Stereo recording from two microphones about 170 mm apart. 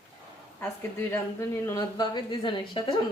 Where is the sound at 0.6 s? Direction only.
10° left (ahead or behind).